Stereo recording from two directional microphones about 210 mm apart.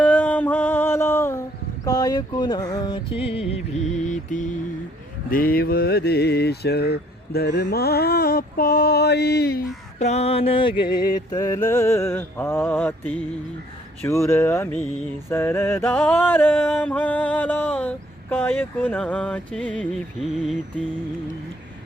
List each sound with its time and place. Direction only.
0.0 s a sound: 5° left (ahead or behind)
1.8 s music: 15° left (ahead or behind)
3.5 s mantra: 35° left (ahead or behind)
10.0 s mantra: 30° left (ahead or behind)
11.3 s music: 15° left (ahead or behind); by 20.6 s centre (ahead or behind)